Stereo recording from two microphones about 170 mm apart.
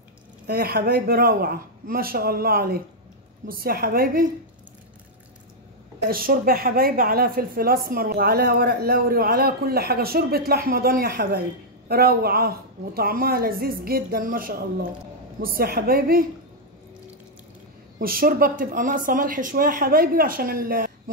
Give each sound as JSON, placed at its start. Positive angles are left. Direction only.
{"t": 0.5, "sound": "a woman's voice", "side_deg": -65}
{"t": 6.0, "sound": "a woman's voice", "side_deg": -60}
{"t": 18.0, "sound": "a woman's voice", "side_deg": -60}